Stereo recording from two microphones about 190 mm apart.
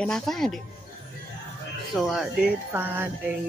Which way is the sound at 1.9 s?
Centre (ahead or behind).